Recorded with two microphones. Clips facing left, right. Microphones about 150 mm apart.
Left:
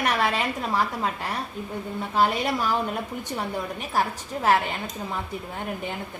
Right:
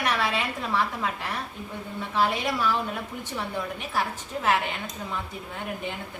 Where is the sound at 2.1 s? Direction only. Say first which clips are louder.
Left 2 dB; 40° left (ahead or behind).